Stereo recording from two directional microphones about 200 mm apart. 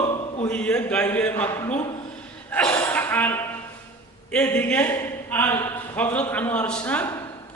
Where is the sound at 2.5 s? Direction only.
10° left (ahead or behind).